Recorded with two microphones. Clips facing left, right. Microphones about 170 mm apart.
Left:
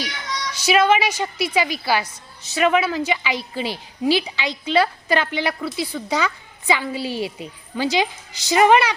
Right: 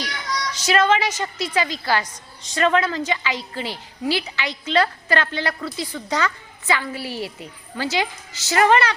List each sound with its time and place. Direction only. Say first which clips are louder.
0.6 s a woman's voice: left 2 dB; 10° left (ahead or behind)